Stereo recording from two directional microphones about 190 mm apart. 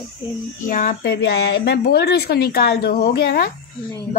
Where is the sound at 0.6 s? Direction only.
45° left (ahead or behind).